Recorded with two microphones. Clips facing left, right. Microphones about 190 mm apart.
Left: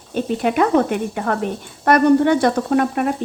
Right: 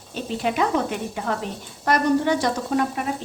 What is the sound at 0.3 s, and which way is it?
A woman's voice, 55° left (ahead or behind).